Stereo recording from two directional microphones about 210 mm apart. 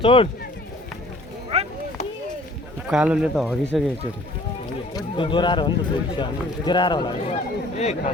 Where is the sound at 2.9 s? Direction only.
5° right (ahead or behind).